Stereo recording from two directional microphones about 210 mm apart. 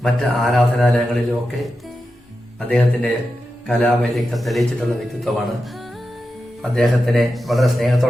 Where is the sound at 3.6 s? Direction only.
Centre (ahead or behind).